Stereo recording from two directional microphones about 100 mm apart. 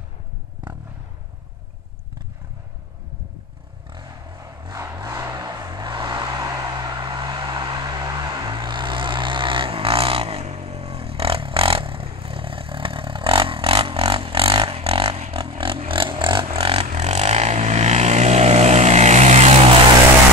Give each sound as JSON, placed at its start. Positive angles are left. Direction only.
{"t": 3.9, "sound": "a sound", "side_deg": -45}
{"t": 5.3, "sound": "vehicle", "side_deg": -40}
{"t": 16.5, "sound": "vehicle", "side_deg": -80}